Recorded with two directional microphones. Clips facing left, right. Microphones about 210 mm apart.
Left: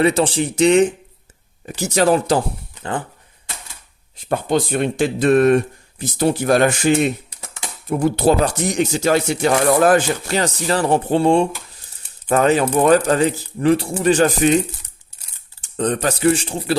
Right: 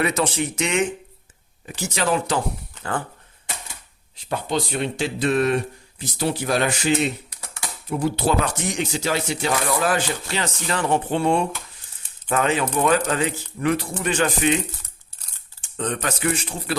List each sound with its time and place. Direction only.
0.0 s speech: 30° left (ahead or behind)
4.3 s a man's voice: 50° left (ahead or behind)
8.4 s a man's voice: 35° left (ahead or behind)
15.6 s speech: 35° left (ahead or behind)